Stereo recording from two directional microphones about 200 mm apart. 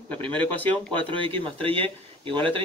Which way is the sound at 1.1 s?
25° right (ahead or behind).